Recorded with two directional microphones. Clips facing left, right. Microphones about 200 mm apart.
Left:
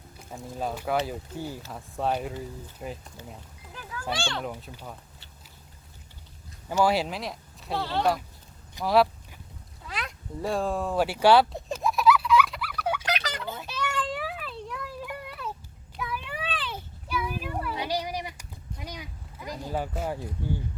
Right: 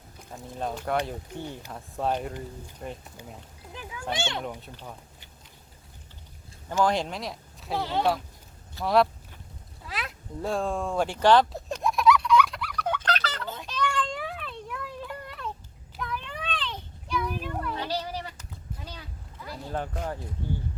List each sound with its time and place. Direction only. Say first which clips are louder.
0.3 s speech: left 1 dB; 5° left (ahead or behind)
3.7 s a sound: even; 20° right (ahead or behind)
4.1 s a child's voice: even; 20° right (ahead or behind)
4.4 s speech: left 1 dB; 5° left (ahead or behind)
6.7 s speech: left 1 dB; 10° left (ahead or behind)
7.8 s speech: right 1 dB; 15° right (ahead or behind)
8.8 s speech: left 1 dB; centre (ahead or behind)
9.8 s a sound: even; centre (ahead or behind)